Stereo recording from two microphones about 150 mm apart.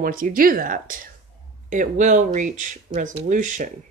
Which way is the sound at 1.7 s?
55° right (ahead or behind).